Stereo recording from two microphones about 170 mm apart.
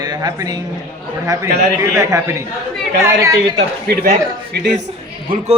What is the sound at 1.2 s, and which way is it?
Speech, 20° right (ahead or behind).